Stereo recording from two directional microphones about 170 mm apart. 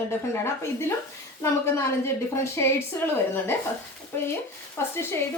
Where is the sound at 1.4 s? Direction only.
15° left (ahead or behind).